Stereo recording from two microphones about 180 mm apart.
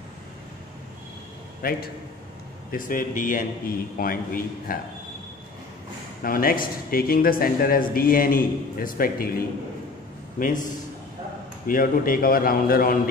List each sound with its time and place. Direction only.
1.6 s a man's voice: 55° left (ahead or behind)
6.2 s speech: 55° left (ahead or behind)
10.4 s speech: 45° left (ahead or behind)